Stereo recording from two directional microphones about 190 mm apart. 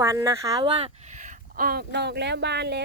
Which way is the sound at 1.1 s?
45° right (ahead or behind).